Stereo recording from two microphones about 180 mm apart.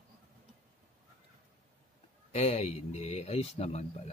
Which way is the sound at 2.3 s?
35° left (ahead or behind).